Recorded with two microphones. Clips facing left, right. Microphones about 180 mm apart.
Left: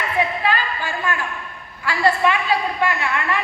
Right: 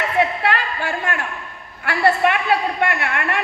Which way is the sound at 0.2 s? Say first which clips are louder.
Right 1 dB; 70° right (ahead or behind).